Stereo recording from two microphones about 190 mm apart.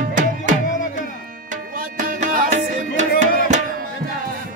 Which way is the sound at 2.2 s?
40° right (ahead or behind).